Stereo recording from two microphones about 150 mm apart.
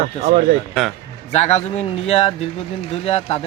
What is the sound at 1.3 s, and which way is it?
Speech, 45° left (ahead or behind).